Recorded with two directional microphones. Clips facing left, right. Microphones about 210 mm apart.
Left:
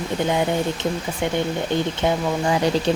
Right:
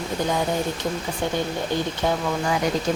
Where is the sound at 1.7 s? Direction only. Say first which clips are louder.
Left 2 dB; 20° left (ahead or behind).